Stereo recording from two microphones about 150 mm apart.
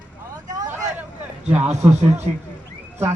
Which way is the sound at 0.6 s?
25° right (ahead or behind).